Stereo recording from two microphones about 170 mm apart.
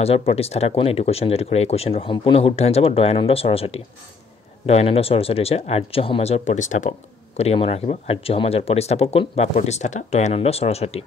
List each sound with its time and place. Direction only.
0.0 s speech: 35° left (ahead or behind)